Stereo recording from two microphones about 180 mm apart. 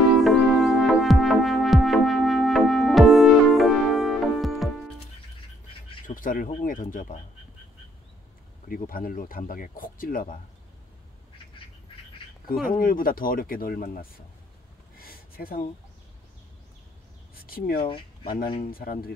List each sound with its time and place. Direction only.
0.2 s music: centre (ahead or behind)
6.0 s speech: 50° left (ahead or behind)
8.6 s speech: 50° left (ahead or behind)
12.6 s speech: 50° left (ahead or behind)
15.0 s a sound: 55° left (ahead or behind)
17.5 s speech: 55° left (ahead or behind)